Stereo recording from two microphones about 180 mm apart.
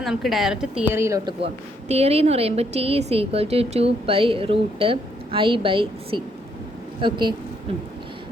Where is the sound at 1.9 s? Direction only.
35° right (ahead or behind).